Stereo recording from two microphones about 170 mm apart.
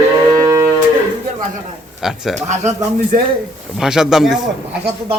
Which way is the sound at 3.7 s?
5° right (ahead or behind).